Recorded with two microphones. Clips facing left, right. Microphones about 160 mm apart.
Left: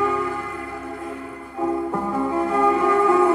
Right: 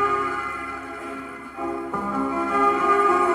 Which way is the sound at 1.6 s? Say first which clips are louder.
Left 5 dB; 30° left (ahead or behind).